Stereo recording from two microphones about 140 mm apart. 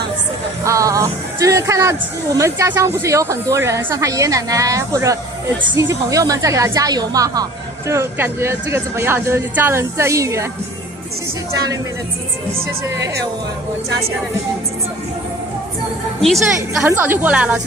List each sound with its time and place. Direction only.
0.7 s speech: 25° right (ahead or behind)
16.2 s a woman's voice: centre (ahead or behind)
16.8 s a woman's voice: 15° right (ahead or behind)